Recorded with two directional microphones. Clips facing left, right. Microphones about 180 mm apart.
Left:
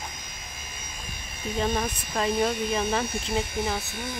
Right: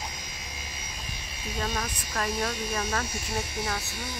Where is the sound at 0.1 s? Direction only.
50° left (ahead or behind).